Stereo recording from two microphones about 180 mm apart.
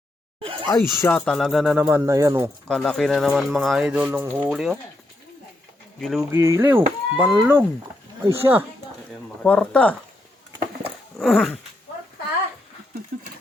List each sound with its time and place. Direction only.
0.4 s speech: 30° right (ahead or behind)
0.7 s speech: 15° left (ahead or behind); by 2.0 s 5° right (ahead or behind)
2.0 s speech: 15° right (ahead or behind)
2.6 s speech: 5° left (ahead or behind)
6.0 s speech: centre (ahead or behind)
6.3 s speech: 15° right (ahead or behind)
9.4 s speech: 5° left (ahead or behind)
11.2 s speech: centre (ahead or behind)